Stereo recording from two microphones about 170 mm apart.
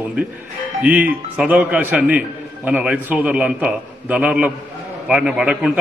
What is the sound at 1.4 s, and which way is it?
A man's voice, 10° right (ahead or behind).